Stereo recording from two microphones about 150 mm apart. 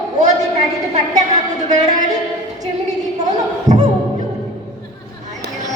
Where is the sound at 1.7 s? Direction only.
50° right (ahead or behind).